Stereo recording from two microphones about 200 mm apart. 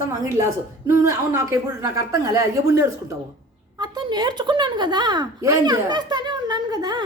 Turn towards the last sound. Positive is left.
turn(degrees=-20)  # may be behind; listen again after turning